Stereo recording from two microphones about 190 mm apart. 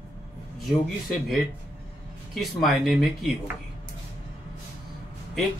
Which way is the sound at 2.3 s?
Centre (ahead or behind).